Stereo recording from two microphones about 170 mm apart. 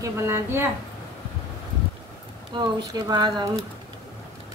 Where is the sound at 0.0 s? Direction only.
15° right (ahead or behind).